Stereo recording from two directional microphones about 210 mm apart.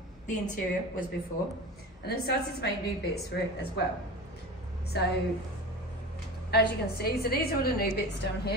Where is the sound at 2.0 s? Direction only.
50° left (ahead or behind).